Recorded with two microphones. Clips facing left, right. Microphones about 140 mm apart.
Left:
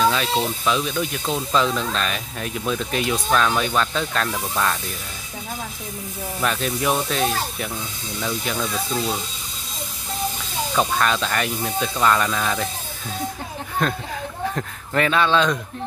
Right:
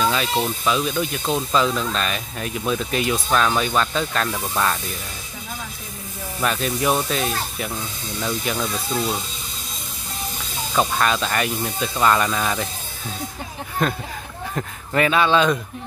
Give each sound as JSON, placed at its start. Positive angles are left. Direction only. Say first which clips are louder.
{"t": 0.1, "sound": "speech", "louder": "even", "side_deg": -5}
{"t": 6.4, "sound": "speech", "louder": "right 1 dB", "side_deg": 0}
{"t": 10.7, "sound": "speech", "louder": "right 1 dB", "side_deg": -5}
{"t": 13.8, "sound": "speech", "louder": "right 1 dB", "side_deg": -5}